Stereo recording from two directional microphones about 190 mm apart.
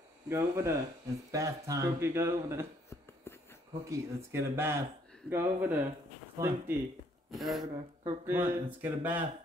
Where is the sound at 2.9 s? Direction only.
10° left (ahead or behind).